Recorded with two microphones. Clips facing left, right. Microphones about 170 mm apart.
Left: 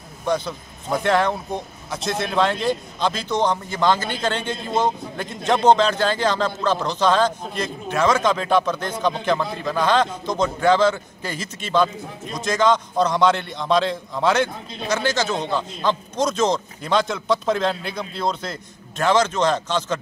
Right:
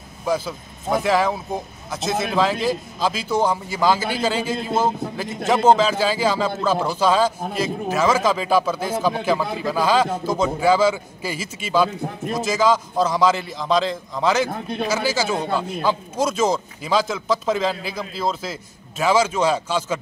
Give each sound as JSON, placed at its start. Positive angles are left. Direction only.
{"t": 0.2, "sound": "speech", "side_deg": -5}
{"t": 14.5, "sound": "a man's voice", "side_deg": -60}
{"t": 14.9, "sound": "speech", "side_deg": -5}